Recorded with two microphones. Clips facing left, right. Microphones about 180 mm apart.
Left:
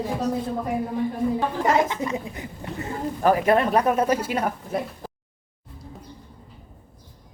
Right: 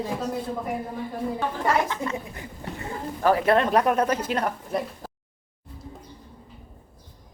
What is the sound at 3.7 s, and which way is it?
Speech, centre (ahead or behind).